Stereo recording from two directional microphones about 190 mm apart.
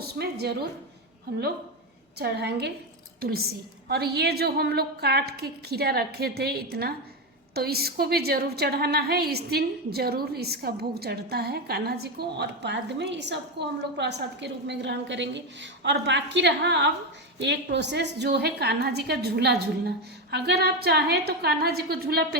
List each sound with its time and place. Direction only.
0.0 s speech: 55° right (ahead or behind)
2.1 s a woman's voice: 60° right (ahead or behind)